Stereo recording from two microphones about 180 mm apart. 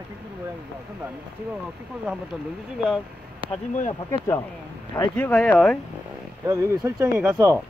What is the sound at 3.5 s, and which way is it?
Speech, 40° left (ahead or behind).